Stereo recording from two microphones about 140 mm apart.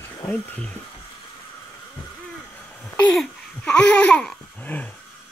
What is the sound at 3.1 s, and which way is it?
Babbling, 5° left (ahead or behind).